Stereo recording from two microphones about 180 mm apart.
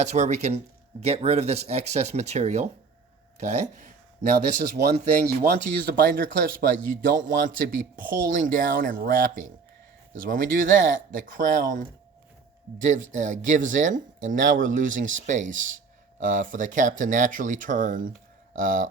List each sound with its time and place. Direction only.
0.0 s speech: 40° right (ahead or behind); by 7.3 s 75° right (ahead or behind)
7.4 s speech: 50° right (ahead or behind)